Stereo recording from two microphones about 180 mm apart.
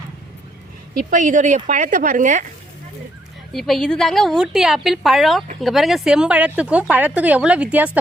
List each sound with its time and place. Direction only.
1.1 s a woman's voice: 45° right (ahead or behind)
3.5 s a woman's voice: centre (ahead or behind)